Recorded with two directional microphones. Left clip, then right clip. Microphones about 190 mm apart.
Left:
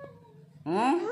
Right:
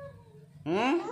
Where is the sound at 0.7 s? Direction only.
25° right (ahead or behind).